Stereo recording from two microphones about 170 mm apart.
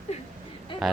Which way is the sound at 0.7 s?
30° left (ahead or behind).